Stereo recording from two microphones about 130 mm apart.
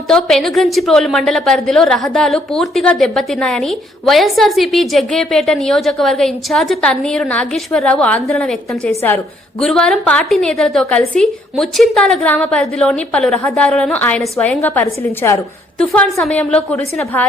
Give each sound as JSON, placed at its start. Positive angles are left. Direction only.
{"t": 0.1, "sound": "a woman's voice", "side_deg": 5}
{"t": 8.9, "sound": "a woman's voice", "side_deg": 20}
{"t": 9.6, "sound": "a woman's voice", "side_deg": 5}
{"t": 15.8, "sound": "a woman's voice", "side_deg": 5}